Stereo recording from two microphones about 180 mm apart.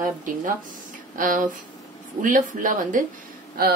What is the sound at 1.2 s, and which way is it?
A woman's voice, 50° right (ahead or behind).